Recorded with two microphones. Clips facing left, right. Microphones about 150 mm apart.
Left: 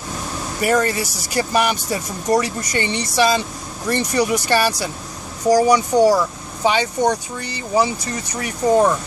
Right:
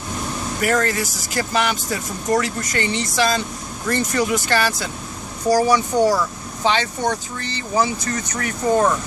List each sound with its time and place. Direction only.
0.6 s speech: 15° left (ahead or behind)